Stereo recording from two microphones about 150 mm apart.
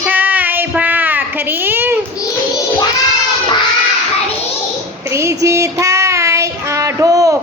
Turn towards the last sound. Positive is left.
turn(degrees=-25)  # may be behind; listen again after turning